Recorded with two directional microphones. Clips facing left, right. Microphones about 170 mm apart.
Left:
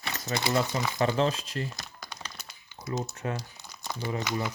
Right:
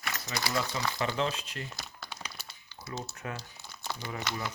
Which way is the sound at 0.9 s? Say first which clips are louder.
Left 7 dB; 40° left (ahead or behind).